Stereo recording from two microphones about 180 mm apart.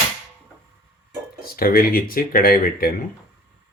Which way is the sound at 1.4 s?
55° left (ahead or behind).